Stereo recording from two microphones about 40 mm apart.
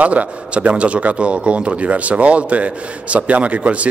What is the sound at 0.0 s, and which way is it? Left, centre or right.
Speech, right.